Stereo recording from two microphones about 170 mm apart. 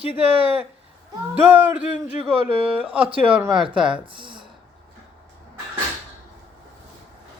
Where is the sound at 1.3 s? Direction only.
10° right (ahead or behind).